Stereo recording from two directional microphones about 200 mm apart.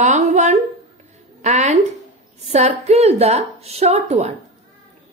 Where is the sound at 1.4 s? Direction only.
35° right (ahead or behind).